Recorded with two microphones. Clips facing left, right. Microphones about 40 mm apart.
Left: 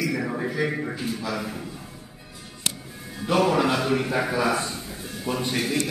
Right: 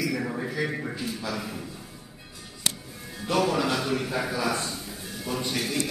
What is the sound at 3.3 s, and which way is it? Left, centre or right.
A man's voice, centre.